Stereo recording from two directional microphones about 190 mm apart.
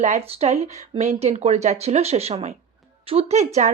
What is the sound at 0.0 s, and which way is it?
Speech, 35° right (ahead or behind).